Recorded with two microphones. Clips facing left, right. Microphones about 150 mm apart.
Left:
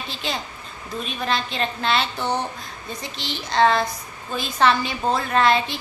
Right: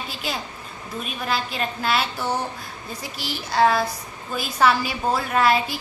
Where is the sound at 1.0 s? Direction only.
5° right (ahead or behind).